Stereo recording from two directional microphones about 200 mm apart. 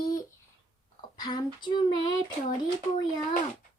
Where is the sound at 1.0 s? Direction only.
20° left (ahead or behind).